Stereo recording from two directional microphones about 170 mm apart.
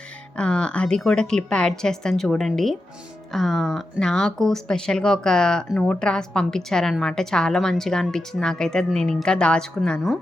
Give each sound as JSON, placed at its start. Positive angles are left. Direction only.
{"t": 0.3, "sound": "speech", "side_deg": 5}